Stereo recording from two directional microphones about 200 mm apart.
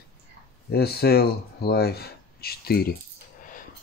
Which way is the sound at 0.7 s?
55° left (ahead or behind).